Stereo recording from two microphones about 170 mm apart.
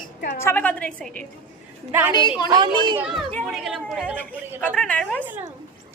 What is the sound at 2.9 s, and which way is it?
Speech, 5° right (ahead or behind).